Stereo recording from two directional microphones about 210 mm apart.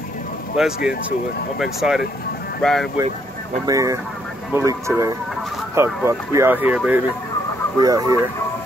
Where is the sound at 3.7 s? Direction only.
15° right (ahead or behind).